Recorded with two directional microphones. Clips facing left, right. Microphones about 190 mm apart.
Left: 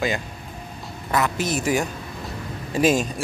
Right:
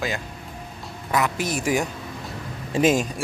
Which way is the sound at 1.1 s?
10° right (ahead or behind).